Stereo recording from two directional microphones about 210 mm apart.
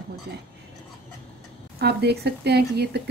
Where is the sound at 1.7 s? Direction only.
50° right (ahead or behind).